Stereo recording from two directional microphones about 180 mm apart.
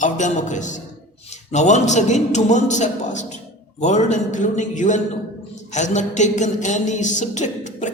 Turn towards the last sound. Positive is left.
turn(degrees=40)  # may be behind; listen again after turning